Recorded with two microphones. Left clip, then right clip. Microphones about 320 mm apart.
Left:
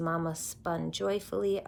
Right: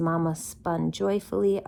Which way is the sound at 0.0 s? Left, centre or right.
Right.